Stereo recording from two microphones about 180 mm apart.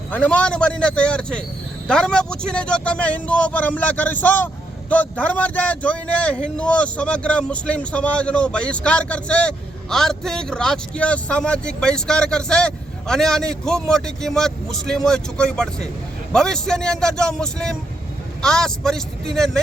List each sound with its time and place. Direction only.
0.1 s speech: 10° left (ahead or behind)